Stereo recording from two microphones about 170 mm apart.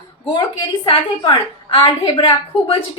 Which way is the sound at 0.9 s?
30° left (ahead or behind).